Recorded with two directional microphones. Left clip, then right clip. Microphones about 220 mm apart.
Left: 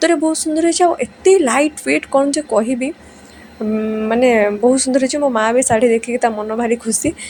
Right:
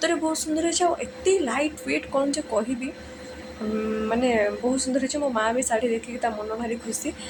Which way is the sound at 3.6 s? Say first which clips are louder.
Left 8 dB; 30° left (ahead or behind).